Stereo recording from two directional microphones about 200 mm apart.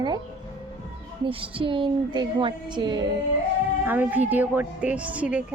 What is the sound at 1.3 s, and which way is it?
A woman's voice, 25° right (ahead or behind).